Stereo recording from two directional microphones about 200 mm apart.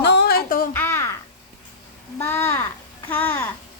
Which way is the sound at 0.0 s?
55° left (ahead or behind).